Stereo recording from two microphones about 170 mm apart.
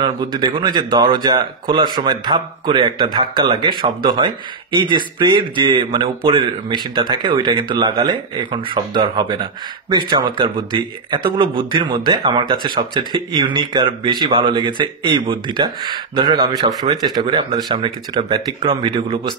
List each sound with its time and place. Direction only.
0.0 s a man's voice: 25° right (ahead or behind)